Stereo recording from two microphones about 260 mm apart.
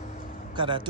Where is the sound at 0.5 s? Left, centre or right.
Centre.